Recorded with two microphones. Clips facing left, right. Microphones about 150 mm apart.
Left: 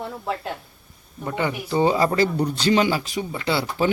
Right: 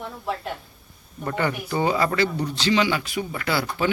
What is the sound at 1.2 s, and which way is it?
A man's voice, 10° left (ahead or behind).